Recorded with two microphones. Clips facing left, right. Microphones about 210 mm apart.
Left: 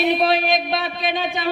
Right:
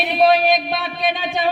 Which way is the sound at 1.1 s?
50° left (ahead or behind).